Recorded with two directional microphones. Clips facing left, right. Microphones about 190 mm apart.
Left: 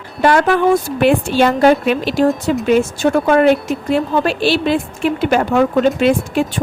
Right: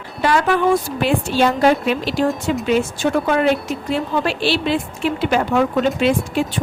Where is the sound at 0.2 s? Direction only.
50° left (ahead or behind).